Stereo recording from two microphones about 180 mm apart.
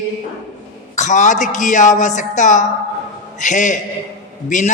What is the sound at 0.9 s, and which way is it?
A woman's voice, 40° left (ahead or behind).